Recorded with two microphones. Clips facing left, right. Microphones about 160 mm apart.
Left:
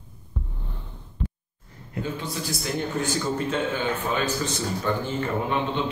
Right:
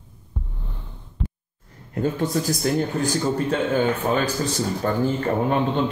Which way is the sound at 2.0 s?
45° right (ahead or behind).